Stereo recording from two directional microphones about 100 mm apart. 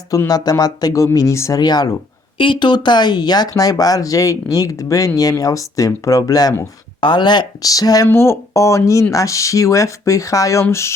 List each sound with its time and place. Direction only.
0.3 s speech: 40° left (ahead or behind)
1.6 s speech: 45° left (ahead or behind)
2.4 s speech: 55° left (ahead or behind); by 6.5 s 40° left (ahead or behind)
7.0 s speech: 50° left (ahead or behind)
8.0 s speech: 25° left (ahead or behind)